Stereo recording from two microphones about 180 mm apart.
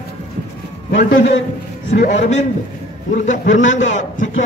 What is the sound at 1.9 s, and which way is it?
Speech, 40° left (ahead or behind).